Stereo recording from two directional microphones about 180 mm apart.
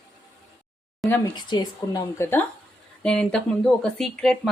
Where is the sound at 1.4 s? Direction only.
25° left (ahead or behind).